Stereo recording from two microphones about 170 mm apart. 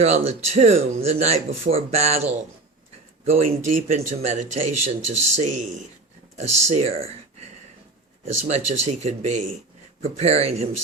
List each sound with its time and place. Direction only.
0.0 s speech: 40° right (ahead or behind)